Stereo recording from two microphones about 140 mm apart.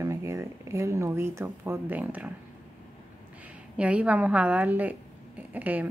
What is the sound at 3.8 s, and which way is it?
A woman's voice, 10° right (ahead or behind).